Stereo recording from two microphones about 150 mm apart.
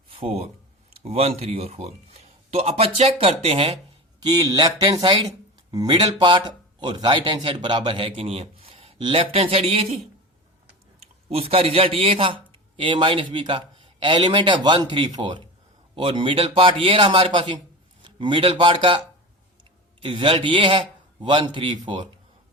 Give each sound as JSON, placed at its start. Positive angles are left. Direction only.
{"t": 0.1, "sound": "a sound", "side_deg": -40}
{"t": 0.9, "sound": "speech", "side_deg": -40}
{"t": 4.2, "sound": "speech", "side_deg": -30}
{"t": 11.3, "sound": "a man's voice", "side_deg": -40}
{"t": 20.0, "sound": "speech", "side_deg": -35}